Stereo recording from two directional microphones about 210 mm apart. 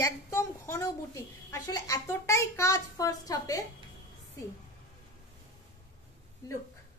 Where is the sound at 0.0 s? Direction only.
15° left (ahead or behind).